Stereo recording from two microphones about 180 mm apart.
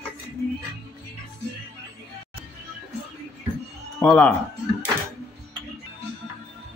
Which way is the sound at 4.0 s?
5° left (ahead or behind).